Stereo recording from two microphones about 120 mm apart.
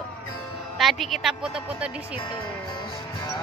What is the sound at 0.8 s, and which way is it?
Speech, centre (ahead or behind).